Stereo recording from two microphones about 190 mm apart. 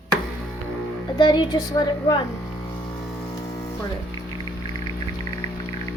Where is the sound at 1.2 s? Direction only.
25° left (ahead or behind).